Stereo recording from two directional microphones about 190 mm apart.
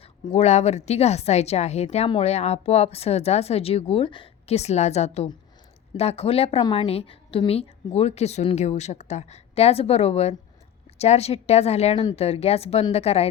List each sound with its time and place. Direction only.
0.0 s speech: 30° left (ahead or behind)